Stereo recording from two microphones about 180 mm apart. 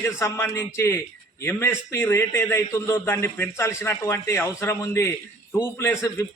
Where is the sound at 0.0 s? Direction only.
15° left (ahead or behind).